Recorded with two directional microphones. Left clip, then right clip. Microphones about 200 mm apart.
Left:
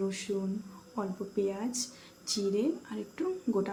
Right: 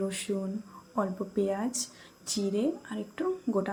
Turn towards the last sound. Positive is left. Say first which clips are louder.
# right 2 dB
turn(degrees=-15)  # may be behind; listen again after turning